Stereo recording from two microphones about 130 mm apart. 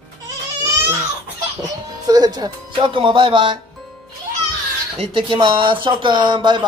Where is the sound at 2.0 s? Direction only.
30° right (ahead or behind).